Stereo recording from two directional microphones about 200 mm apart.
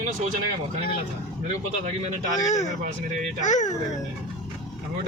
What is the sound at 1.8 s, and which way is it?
Speech, 35° right (ahead or behind).